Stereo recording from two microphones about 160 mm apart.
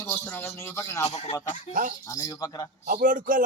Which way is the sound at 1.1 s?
40° left (ahead or behind).